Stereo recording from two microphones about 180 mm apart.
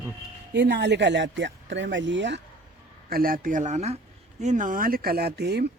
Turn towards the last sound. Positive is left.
turn(degrees=-65)  # may be behind; listen again after turning